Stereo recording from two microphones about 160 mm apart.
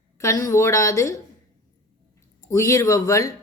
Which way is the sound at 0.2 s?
20° left (ahead or behind).